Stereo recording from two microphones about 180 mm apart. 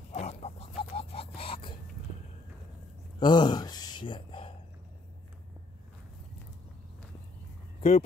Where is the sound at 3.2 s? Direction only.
25° left (ahead or behind).